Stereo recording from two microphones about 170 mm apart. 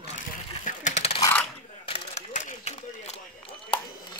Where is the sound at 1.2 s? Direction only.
10° left (ahead or behind).